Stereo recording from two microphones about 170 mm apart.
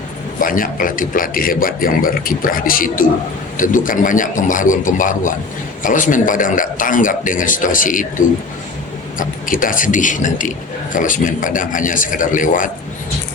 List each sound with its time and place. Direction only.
0.4 s a man's voice: 55° left (ahead or behind)
9.1 s a man's voice: 55° left (ahead or behind)